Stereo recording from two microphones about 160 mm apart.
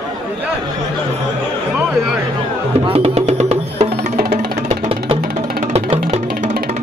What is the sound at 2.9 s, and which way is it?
Music, 40° right (ahead or behind).